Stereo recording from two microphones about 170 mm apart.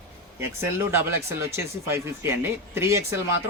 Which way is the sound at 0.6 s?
15° right (ahead or behind).